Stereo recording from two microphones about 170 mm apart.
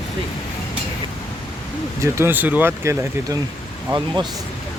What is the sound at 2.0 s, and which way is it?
Speech, 15° right (ahead or behind).